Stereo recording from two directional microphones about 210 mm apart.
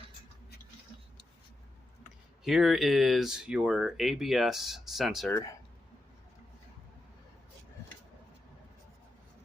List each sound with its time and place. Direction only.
2.4 s speech: centre (ahead or behind)
5.3 s speech: 15° left (ahead or behind)